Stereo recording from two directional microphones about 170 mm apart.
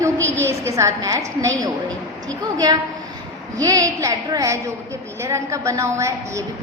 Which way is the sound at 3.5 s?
20° right (ahead or behind).